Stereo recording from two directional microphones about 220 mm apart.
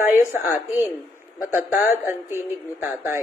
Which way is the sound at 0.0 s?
10° right (ahead or behind).